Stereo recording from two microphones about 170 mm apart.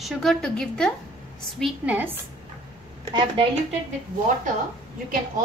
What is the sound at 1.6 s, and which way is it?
Speech, 10° right (ahead or behind).